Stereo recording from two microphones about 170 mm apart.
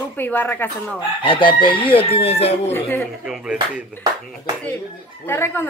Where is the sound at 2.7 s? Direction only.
15° left (ahead or behind).